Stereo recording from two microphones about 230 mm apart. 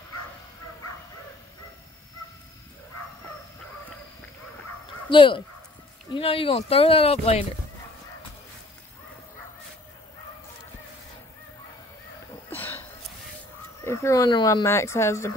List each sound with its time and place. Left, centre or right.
5.1 s speech: left
12.5 s hiccup: centre
13.8 s speech: centre